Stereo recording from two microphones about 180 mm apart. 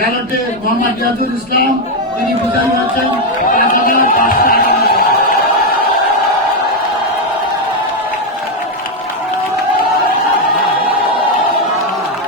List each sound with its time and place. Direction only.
3.5 s speech: 50° left (ahead or behind)